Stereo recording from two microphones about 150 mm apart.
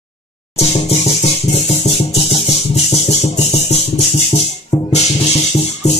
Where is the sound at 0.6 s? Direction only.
45° left (ahead or behind).